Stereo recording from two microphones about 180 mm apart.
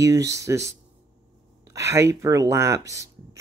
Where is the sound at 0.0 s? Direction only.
20° right (ahead or behind).